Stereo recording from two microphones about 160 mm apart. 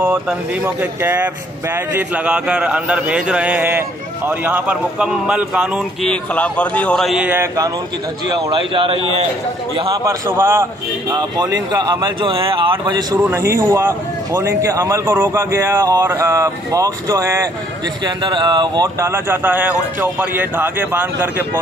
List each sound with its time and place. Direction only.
0.0 s a man's voice: 10° right (ahead or behind)
6.0 s a man's voice: 5° left (ahead or behind)
7.2 s a man's voice: 20° right (ahead or behind)
8.3 s speech: 30° right (ahead or behind)
10.0 s a man's voice: 15° right (ahead or behind)
13.2 s speech: 15° right (ahead or behind)
18.0 s speech: 30° right (ahead or behind); by 21.5 s 10° right (ahead or behind)